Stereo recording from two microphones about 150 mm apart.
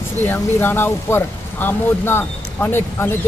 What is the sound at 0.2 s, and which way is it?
Speech, 15° left (ahead or behind).